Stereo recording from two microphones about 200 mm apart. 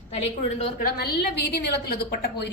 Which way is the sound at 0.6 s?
40° left (ahead or behind).